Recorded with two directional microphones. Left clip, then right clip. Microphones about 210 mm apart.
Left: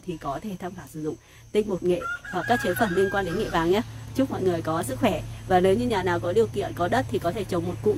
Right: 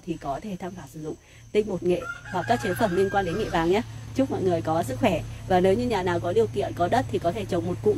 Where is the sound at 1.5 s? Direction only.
5° left (ahead or behind).